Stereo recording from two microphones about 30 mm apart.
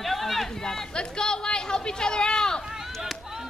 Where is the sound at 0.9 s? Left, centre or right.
Left.